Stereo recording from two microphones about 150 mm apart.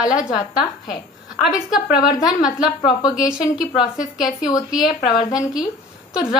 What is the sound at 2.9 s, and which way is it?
Speech, 25° left (ahead or behind).